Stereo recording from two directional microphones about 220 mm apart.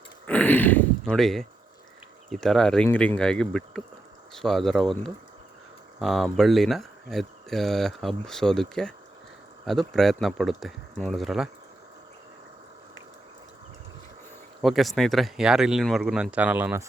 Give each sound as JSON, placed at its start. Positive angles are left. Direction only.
{"t": 0.3, "sound": "speech", "side_deg": 5}
{"t": 14.6, "sound": "speech", "side_deg": 0}